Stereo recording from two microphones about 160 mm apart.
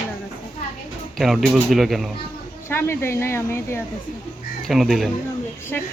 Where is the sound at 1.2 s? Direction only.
Centre (ahead or behind).